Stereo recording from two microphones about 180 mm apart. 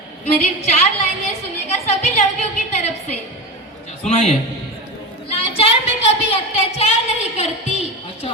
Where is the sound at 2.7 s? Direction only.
35° left (ahead or behind).